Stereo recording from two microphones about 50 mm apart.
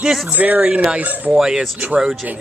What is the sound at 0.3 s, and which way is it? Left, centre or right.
Speech, right.